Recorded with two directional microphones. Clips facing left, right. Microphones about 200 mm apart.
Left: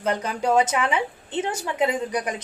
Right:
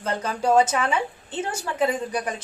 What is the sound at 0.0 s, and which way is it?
A woman's voice, 15° left (ahead or behind).